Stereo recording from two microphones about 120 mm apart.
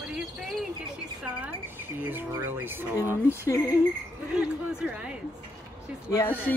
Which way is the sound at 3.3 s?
25° left (ahead or behind).